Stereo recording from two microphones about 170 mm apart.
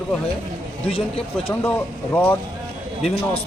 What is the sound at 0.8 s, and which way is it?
Speech, 35° left (ahead or behind).